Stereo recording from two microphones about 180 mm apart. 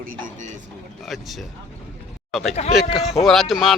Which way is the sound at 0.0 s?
45° right (ahead or behind).